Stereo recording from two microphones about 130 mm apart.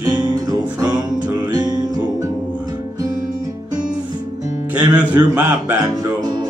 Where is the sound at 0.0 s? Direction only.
35° right (ahead or behind).